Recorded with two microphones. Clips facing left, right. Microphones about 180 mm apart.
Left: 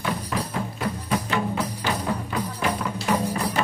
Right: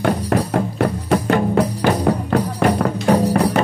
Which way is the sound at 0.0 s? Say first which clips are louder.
Right 10 dB; 65° right (ahead or behind).